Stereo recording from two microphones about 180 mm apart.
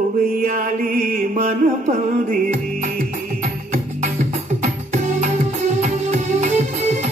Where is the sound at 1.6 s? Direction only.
50° right (ahead or behind).